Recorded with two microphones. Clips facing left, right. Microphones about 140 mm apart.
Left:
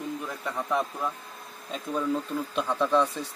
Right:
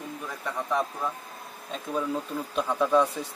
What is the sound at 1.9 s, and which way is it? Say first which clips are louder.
Speech: left 1 dB; 10° right (ahead or behind).